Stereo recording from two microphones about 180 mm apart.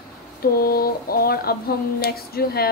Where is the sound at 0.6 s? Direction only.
55° left (ahead or behind).